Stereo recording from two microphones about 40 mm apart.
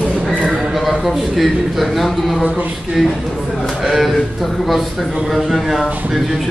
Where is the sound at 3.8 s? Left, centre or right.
Centre.